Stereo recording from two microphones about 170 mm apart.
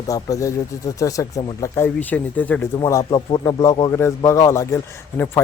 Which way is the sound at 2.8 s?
20° left (ahead or behind).